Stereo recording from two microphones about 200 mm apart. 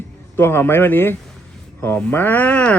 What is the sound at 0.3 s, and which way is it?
Speech, 10° left (ahead or behind).